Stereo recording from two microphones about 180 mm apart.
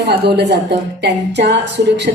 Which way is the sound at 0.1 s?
65° right (ahead or behind).